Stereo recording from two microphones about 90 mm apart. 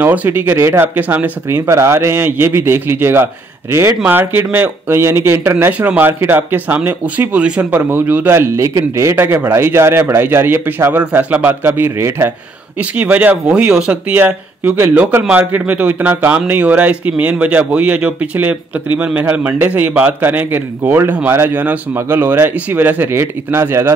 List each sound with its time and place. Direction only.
0.0 s speech: 20° right (ahead or behind)
1.7 s speech: 30° right (ahead or behind)